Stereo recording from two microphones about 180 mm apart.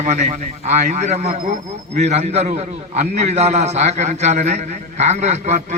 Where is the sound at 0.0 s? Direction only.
40° right (ahead or behind).